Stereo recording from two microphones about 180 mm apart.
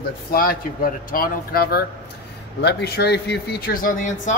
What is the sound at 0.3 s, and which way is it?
Speech, 55° left (ahead or behind).